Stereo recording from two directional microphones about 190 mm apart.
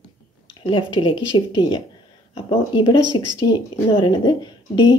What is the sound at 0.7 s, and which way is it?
A woman's voice, 25° left (ahead or behind).